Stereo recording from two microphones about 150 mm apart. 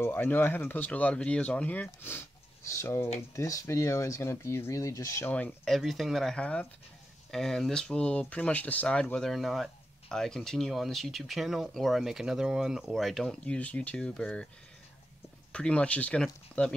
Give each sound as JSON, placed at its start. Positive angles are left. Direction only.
{"t": 0.0, "sound": "speech", "side_deg": 15}
{"t": 5.3, "sound": "speech", "side_deg": 10}
{"t": 15.5, "sound": "speech", "side_deg": 5}